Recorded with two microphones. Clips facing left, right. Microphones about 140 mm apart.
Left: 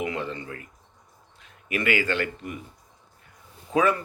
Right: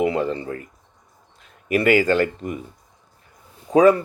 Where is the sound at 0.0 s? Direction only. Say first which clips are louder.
Right 9 dB; 35° right (ahead or behind).